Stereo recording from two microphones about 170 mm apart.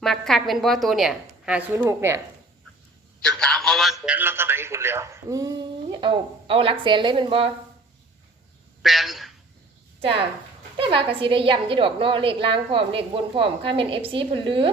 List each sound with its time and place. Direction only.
0.0 s a woman's voice: centre (ahead or behind); by 2.2 s 15° right (ahead or behind)
3.2 s a man's voice: 5° left (ahead or behind)
4.0 s speech: 10° right (ahead or behind); by 7.5 s 30° right (ahead or behind)
8.8 s speech: centre (ahead or behind)
10.8 s a woman's voice: 30° right (ahead or behind)